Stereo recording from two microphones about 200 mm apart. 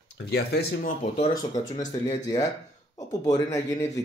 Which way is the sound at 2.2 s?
15° left (ahead or behind).